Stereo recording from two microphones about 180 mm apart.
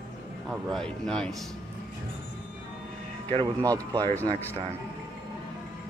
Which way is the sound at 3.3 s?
25° right (ahead or behind).